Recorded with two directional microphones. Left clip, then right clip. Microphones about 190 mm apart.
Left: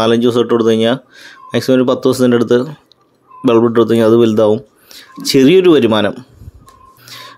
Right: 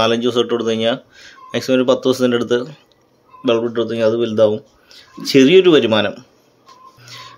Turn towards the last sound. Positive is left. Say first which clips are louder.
# left 3 dB
turn(degrees=25)  # may be behind; listen again after turning